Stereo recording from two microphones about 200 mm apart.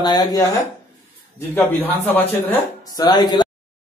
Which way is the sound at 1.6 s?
10° left (ahead or behind).